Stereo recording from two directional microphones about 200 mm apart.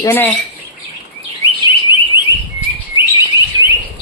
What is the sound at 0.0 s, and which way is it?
Speech, 10° left (ahead or behind).